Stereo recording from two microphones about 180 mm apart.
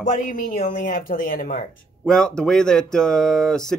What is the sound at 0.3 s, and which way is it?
Speech, 50° left (ahead or behind).